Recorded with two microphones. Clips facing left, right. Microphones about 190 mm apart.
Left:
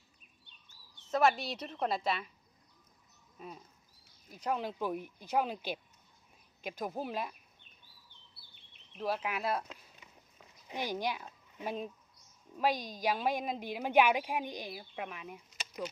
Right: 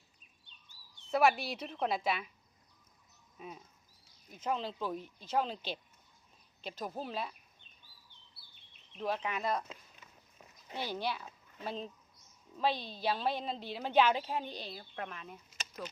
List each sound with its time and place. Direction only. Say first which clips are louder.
0.9 s speech: even; 10° right (ahead or behind)
3.3 s speech: even; 5° right (ahead or behind)
4.5 s a woman's voice: left 3 dB; 15° left (ahead or behind)
9.0 s a woman's voice: left 1 dB; 5° left (ahead or behind)